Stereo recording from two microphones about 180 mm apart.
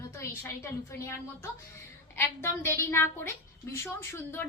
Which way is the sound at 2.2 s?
15° left (ahead or behind).